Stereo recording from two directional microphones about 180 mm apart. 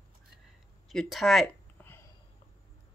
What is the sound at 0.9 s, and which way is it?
Speech, centre (ahead or behind).